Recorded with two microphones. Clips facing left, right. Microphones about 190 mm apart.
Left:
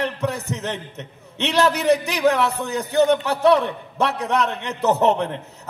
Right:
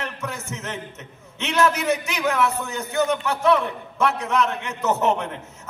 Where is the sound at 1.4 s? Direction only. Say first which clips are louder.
Left 2 dB; 35° left (ahead or behind).